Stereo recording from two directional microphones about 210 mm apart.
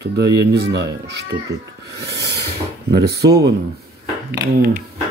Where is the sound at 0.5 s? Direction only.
50° right (ahead or behind).